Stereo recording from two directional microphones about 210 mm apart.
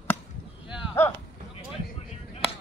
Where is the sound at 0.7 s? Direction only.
15° left (ahead or behind).